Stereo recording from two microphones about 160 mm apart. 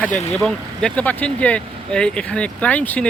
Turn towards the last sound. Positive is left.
turn(degrees=10)  # may be behind; listen again after turning